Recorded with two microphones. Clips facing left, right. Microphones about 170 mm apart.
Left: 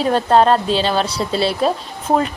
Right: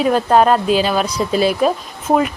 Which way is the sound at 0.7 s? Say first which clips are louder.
Right 2 dB; 30° left (ahead or behind).